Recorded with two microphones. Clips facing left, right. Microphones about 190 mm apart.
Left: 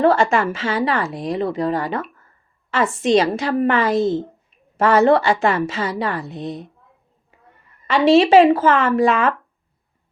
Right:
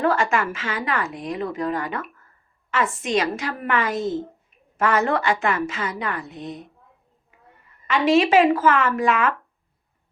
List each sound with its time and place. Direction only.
0.0 s a woman's voice: 30° left (ahead or behind)
7.9 s a woman's voice: 30° left (ahead or behind)